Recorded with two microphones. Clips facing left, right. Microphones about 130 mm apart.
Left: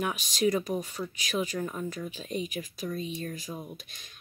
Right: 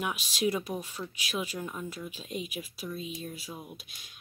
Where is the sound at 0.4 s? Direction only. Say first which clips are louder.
Left 4 dB; 5° right (ahead or behind).